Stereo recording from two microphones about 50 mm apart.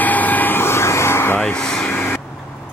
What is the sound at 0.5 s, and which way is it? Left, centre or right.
Vehicle, left.